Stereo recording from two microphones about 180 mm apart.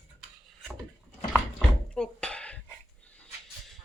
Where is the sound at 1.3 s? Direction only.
5° left (ahead or behind).